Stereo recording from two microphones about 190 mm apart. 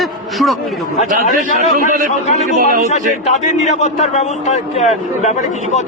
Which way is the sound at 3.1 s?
40° left (ahead or behind).